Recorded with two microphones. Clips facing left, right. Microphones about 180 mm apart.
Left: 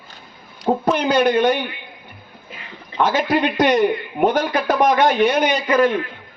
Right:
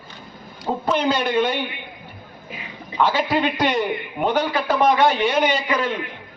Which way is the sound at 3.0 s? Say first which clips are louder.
Left 2 dB; 45° left (ahead or behind).